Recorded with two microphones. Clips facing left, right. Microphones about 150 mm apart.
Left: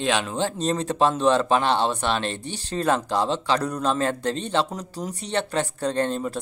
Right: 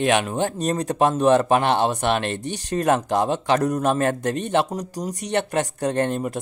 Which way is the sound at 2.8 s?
55° right (ahead or behind).